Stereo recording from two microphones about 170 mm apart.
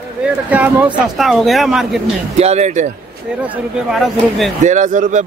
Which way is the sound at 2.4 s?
40° right (ahead or behind).